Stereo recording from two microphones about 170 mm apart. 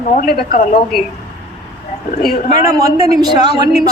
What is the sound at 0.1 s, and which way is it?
Speech, 60° left (ahead or behind).